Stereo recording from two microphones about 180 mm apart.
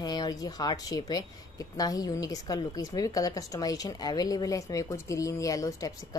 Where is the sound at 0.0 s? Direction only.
20° left (ahead or behind).